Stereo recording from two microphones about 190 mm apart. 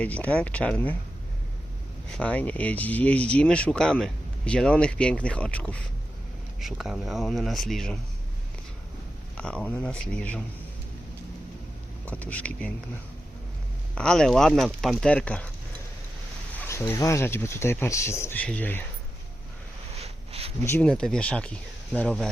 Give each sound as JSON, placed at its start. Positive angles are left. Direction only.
{"t": 0.0, "sound": "speech", "side_deg": 5}
{"t": 2.1, "sound": "speech", "side_deg": 5}
{"t": 9.4, "sound": "speech", "side_deg": 5}
{"t": 12.0, "sound": "speech", "side_deg": 10}
{"t": 13.9, "sound": "speech", "side_deg": 5}
{"t": 16.6, "sound": "speech", "side_deg": 10}
{"t": 20.0, "sound": "a sound", "side_deg": -30}
{"t": 20.6, "sound": "speech", "side_deg": 10}